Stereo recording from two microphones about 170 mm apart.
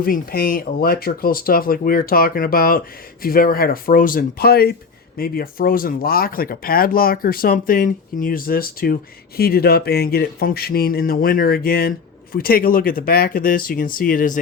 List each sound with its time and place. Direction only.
0.0 s speech: 60° left (ahead or behind)